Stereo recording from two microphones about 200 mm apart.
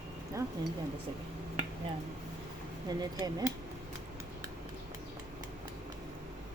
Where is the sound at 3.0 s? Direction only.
20° right (ahead or behind).